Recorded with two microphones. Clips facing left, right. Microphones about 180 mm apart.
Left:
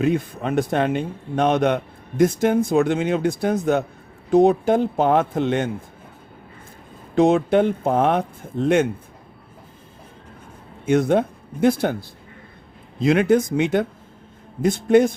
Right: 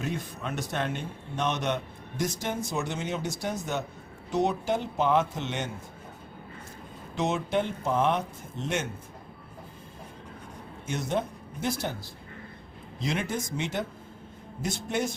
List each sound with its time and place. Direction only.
0.0 s a man's voice: 60° left (ahead or behind)
1.4 s a man's voice: 60° left (ahead or behind)
7.5 s a man's voice: 55° left (ahead or behind)
10.8 s speech: 60° left (ahead or behind)
13.1 s a man's voice: 60° left (ahead or behind)